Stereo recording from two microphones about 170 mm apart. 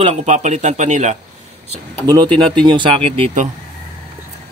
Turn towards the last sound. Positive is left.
turn(degrees=-35)  # may be behind; listen again after turning